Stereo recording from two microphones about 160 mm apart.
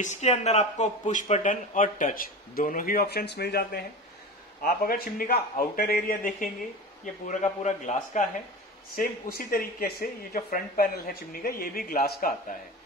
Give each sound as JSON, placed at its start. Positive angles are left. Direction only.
{"t": 0.0, "sound": "speech", "side_deg": 45}
{"t": 4.6, "sound": "a man's voice", "side_deg": 65}
{"t": 8.9, "sound": "speech", "side_deg": 65}